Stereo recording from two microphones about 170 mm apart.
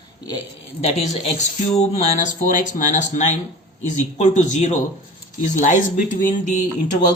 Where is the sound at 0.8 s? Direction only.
40° left (ahead or behind).